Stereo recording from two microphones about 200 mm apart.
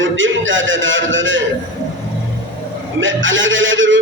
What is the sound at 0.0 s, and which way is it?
A man's voice, 70° right (ahead or behind).